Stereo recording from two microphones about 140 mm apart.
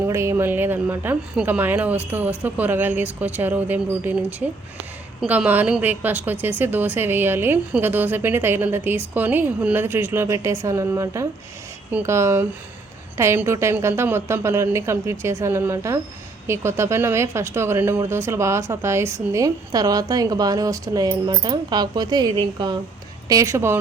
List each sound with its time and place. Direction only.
0.0 s a woman's voice: 20° right (ahead or behind)